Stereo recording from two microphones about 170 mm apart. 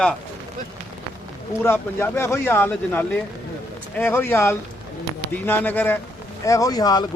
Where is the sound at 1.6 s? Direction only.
15° left (ahead or behind).